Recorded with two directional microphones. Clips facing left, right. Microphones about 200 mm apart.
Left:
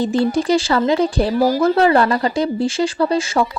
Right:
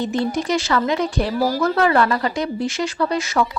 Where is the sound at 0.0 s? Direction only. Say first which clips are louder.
Left 4 dB; 30° left (ahead or behind).